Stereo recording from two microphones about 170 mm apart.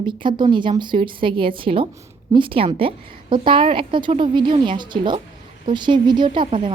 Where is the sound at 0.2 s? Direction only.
30° right (ahead or behind).